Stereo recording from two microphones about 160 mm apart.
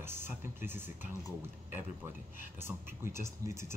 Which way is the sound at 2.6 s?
15° right (ahead or behind).